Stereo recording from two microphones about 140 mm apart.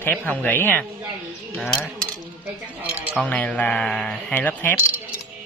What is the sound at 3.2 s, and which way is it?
Speech, 10° left (ahead or behind).